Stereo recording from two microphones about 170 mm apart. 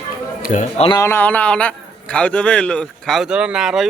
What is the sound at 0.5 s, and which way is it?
Speech, 50° left (ahead or behind).